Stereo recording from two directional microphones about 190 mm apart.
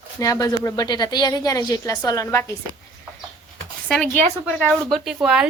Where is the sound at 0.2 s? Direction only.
20° left (ahead or behind).